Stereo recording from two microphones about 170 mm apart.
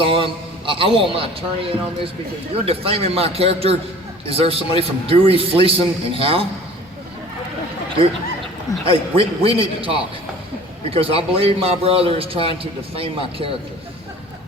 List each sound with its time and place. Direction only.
0.0 s a man's voice: 30° right (ahead or behind)
8.8 s a man's voice: 35° right (ahead or behind)